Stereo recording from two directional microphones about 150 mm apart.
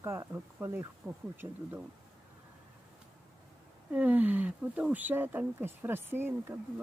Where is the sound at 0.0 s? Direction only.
20° right (ahead or behind).